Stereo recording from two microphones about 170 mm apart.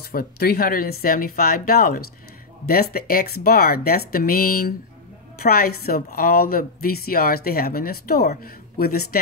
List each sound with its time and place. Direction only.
0.0 s a woman's voice: 60° left (ahead or behind)